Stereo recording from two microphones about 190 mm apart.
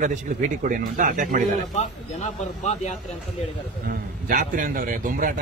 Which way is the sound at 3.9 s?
45° right (ahead or behind).